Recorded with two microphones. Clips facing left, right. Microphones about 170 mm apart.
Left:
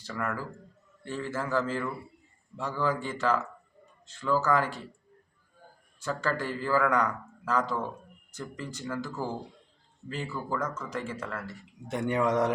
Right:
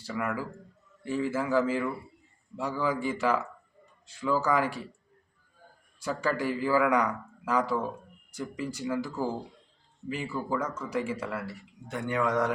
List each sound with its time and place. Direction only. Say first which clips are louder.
0.0 s a man's voice: right 2 dB; 10° right (ahead or behind)
6.0 s a man's voice: right 2 dB; 10° right (ahead or behind)
11.9 s speech: left 2 dB; 25° left (ahead or behind)